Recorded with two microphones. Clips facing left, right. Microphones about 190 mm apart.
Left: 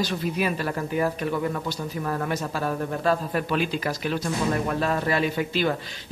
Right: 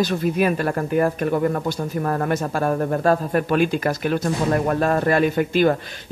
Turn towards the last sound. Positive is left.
turn(degrees=-50)  # may be behind; listen again after turning